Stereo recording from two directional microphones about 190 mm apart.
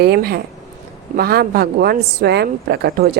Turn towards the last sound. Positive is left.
turn(degrees=-55)  # may be behind; listen again after turning